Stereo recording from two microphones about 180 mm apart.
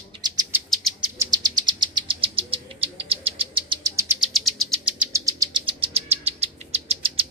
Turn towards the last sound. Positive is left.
turn(degrees=-35)  # may be behind; listen again after turning